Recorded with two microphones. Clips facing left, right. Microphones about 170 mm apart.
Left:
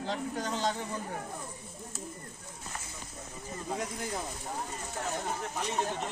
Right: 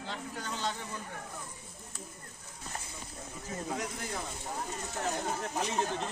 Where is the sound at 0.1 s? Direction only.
40° left (ahead or behind).